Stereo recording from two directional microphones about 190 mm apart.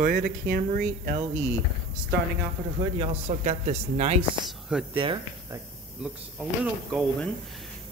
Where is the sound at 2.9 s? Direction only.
30° right (ahead or behind).